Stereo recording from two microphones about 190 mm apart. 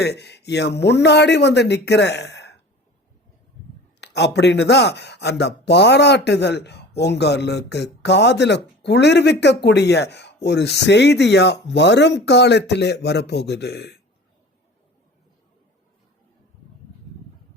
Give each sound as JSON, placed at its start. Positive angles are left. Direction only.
{"t": 0.0, "sound": "speech", "side_deg": 60}
{"t": 4.0, "sound": "speech", "side_deg": 65}